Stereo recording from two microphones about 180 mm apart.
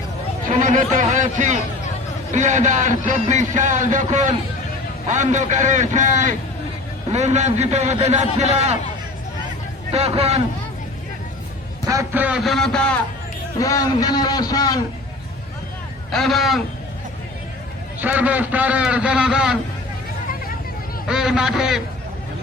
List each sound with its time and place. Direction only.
0.5 s a man's voice: 45° right (ahead or behind)
9.9 s a man's voice: 35° right (ahead or behind)
11.9 s speech: 15° right (ahead or behind); by 13.0 s 5° left (ahead or behind)
13.6 s a man's voice: 20° left (ahead or behind)
16.1 s speech: centre (ahead or behind)
18.0 s a man's voice: 10° right (ahead or behind)
21.1 s speech: 5° right (ahead or behind)